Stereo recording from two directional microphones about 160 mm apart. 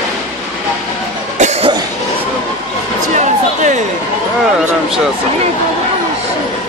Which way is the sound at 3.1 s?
50° right (ahead or behind).